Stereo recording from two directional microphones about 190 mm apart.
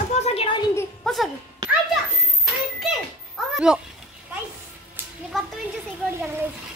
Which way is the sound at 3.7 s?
5° right (ahead or behind).